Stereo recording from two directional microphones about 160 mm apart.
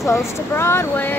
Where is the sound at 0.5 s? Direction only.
15° left (ahead or behind).